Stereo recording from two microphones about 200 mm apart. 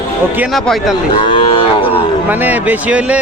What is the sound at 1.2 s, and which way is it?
Cattle, 25° left (ahead or behind).